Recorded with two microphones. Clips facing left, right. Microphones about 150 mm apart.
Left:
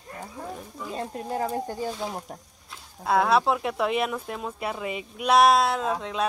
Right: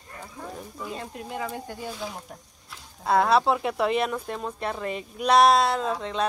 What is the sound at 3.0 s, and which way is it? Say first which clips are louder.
Speech: right 1 dB; centre (ahead or behind).